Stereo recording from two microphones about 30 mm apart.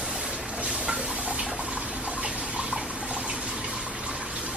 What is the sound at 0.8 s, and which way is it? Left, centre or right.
Water, right.